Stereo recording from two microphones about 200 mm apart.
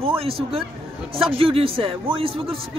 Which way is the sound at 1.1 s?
25° right (ahead or behind).